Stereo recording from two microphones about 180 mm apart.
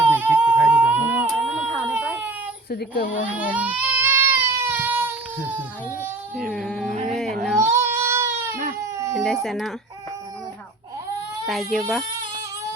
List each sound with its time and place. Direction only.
0.0 s a sound: 10° right (ahead or behind)
2.6 s speech: 55° left (ahead or behind)
3.3 s baby cry: 10° right (ahead or behind)
6.5 s speech: 5° left (ahead or behind)
7.1 s baby cry: centre (ahead or behind)
7.6 s child singing: 15° right (ahead or behind)
8.8 s baby cry: 15° right (ahead or behind)
9.1 s speech: centre (ahead or behind)
11.4 s speech: centre (ahead or behind)